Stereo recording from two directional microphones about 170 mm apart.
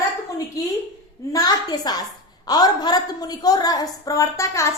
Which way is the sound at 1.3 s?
20° left (ahead or behind).